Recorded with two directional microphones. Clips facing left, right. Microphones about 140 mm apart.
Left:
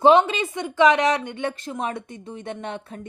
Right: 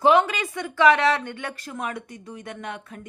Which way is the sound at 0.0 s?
25° left (ahead or behind).